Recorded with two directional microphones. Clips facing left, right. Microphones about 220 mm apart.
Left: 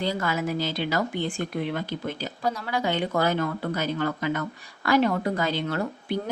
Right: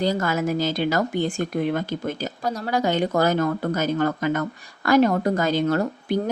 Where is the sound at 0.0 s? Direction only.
45° right (ahead or behind).